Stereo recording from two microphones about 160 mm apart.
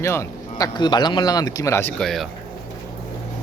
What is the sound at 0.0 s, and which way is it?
Speech, 20° left (ahead or behind).